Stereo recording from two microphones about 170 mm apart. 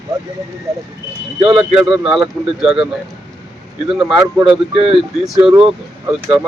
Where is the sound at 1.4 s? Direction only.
30° right (ahead or behind).